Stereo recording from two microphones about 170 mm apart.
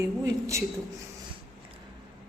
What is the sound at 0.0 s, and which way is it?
Speech, 15° right (ahead or behind).